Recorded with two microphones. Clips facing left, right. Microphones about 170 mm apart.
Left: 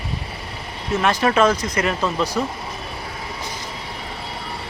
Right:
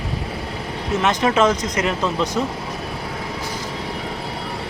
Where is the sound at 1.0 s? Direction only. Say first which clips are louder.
Even; 20° right (ahead or behind).